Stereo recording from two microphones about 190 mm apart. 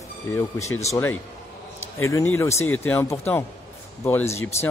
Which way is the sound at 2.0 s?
15° left (ahead or behind).